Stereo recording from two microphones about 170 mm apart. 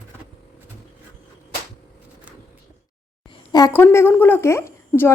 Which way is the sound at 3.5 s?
15° left (ahead or behind).